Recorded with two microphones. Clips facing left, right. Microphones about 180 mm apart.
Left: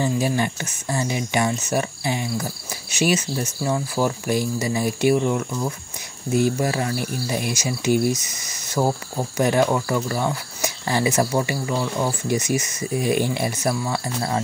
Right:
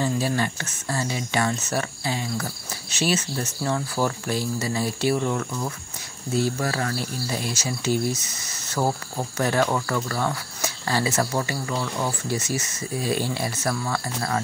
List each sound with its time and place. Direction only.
0.0 s speech: 15° left (ahead or behind)